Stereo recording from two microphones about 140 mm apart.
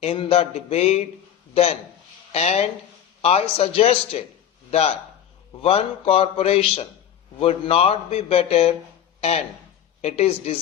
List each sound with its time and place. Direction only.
0.0 s a man's voice: 45° left (ahead or behind)
10.0 s a man's voice: 50° left (ahead or behind)